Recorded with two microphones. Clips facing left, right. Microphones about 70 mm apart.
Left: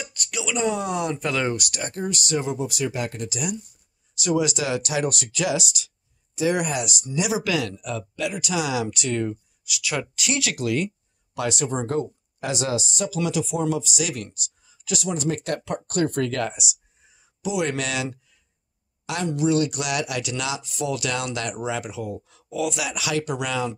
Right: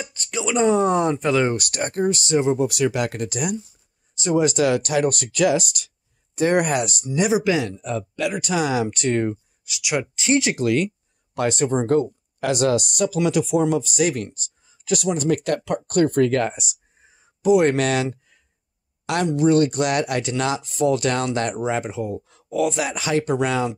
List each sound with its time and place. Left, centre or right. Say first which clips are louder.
0.0 s speech: right 4 dB; right
1.1 s speech: right 5 dB; right
1.5 s speech: right 4 dB; right
2.5 s speech: right 6 dB; right
3.2 s speech: right 4 dB; right
4.1 s speech: right 3 dB; right
7.3 s speech: right 4 dB; right
8.2 s speech: right 3 dB; right
9.8 s speech: right 3 dB; centre
10.6 s speech: right 4 dB; right
11.3 s speech: right 5 dB; right
15.2 s speech: right 5 dB; right
19.3 s speech: right 4 dB; right